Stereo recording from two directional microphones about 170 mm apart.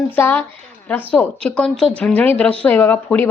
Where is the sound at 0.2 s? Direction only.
10° left (ahead or behind).